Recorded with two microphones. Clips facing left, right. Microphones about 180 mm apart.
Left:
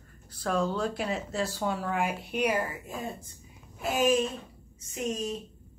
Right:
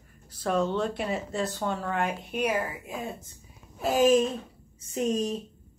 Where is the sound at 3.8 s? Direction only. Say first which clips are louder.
Right 4 dB; 35° right (ahead or behind).